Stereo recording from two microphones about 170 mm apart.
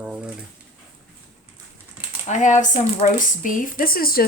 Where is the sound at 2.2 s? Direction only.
45° left (ahead or behind).